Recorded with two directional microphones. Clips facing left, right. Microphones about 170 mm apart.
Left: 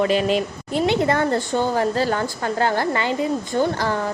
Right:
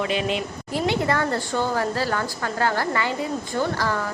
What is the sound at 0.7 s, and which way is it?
A woman's voice, 25° left (ahead or behind).